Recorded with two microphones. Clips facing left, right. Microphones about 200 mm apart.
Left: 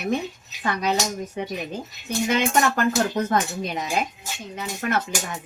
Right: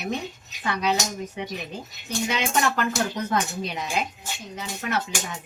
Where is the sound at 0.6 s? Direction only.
45° left (ahead or behind).